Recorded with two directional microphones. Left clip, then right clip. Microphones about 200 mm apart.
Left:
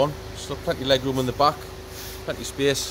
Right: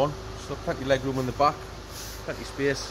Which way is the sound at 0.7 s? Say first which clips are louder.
Left 4 dB; 25° left (ahead or behind).